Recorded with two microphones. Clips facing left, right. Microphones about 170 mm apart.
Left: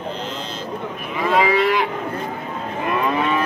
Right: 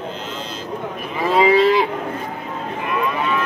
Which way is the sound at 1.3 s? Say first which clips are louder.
Right 4 dB; 30° right (ahead or behind).